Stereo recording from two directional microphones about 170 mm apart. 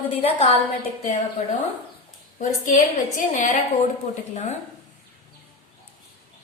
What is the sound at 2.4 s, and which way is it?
A woman's voice, 50° left (ahead or behind).